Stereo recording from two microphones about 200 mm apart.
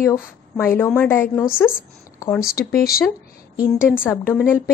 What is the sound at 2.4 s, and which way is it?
Speech, 50° left (ahead or behind).